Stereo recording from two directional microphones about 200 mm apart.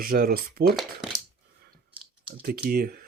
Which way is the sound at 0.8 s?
Centre (ahead or behind).